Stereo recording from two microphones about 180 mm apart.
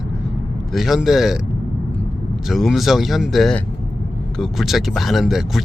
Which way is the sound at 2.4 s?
Centre (ahead or behind).